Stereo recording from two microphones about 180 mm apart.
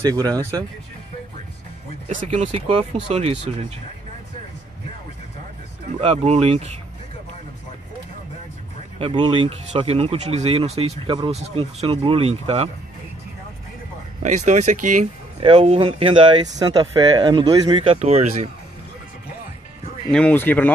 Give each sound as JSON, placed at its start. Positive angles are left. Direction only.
{"t": 0.0, "sound": "speech", "side_deg": -20}
{"t": 2.0, "sound": "speech", "side_deg": -40}
{"t": 5.9, "sound": "speech", "side_deg": -35}
{"t": 8.9, "sound": "speech", "side_deg": -30}
{"t": 14.2, "sound": "speech", "side_deg": -40}
{"t": 15.4, "sound": "speech", "side_deg": -30}
{"t": 20.1, "sound": "speech", "side_deg": 5}